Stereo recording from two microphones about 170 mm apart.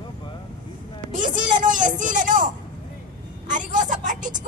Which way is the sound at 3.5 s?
50° right (ahead or behind).